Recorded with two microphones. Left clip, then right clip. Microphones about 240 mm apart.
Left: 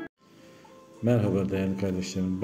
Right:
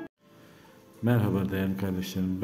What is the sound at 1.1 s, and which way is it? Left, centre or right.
A man's voice, centre.